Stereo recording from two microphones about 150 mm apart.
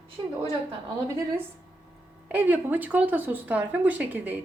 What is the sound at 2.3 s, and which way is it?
Speech, 10° right (ahead or behind).